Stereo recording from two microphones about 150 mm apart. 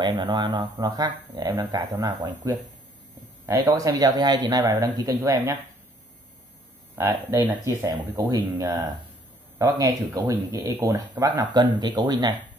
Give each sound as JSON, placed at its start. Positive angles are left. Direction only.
{"t": 0.0, "sound": "speech", "side_deg": -30}
{"t": 7.0, "sound": "speech", "side_deg": -15}